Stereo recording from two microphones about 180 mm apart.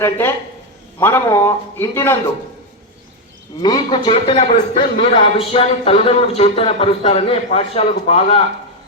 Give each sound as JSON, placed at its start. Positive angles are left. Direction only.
{"t": 0.0, "sound": "speech", "side_deg": 10}
{"t": 3.6, "sound": "a man's voice", "side_deg": 25}